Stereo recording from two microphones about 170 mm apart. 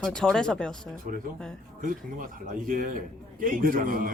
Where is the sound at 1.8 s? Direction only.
50° right (ahead or behind).